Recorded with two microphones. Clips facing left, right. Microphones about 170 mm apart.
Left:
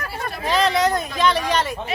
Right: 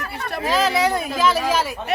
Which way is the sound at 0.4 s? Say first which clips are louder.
Even; 5° right (ahead or behind).